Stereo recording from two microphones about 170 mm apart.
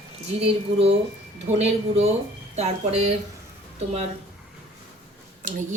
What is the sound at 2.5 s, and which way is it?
Speech, 40° right (ahead or behind).